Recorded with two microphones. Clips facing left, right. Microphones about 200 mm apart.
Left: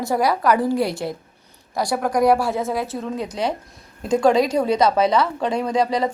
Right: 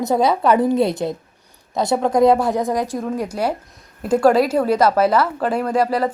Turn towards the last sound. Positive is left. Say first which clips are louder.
# right 2 dB
turn(degrees=-5)  # may be behind; listen again after turning